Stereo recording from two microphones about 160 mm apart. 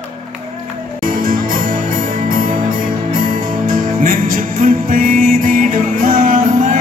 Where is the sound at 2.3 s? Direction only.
60° right (ahead or behind).